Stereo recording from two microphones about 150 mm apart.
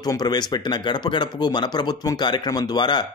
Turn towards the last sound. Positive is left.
turn(degrees=30)  # may be behind; listen again after turning